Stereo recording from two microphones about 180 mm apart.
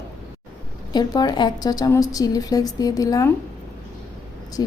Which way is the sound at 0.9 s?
20° left (ahead or behind).